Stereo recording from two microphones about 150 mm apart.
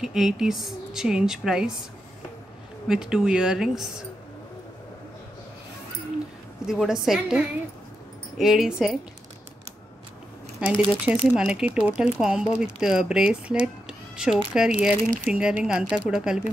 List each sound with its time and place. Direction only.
0.0 s speech: 5° right (ahead or behind)
2.9 s speech: 5° right (ahead or behind)
6.6 s speech: 5° right (ahead or behind)
10.6 s speech: 5° right (ahead or behind)